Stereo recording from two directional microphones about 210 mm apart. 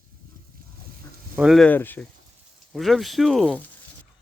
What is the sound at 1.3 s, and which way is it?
Speech, centre (ahead or behind).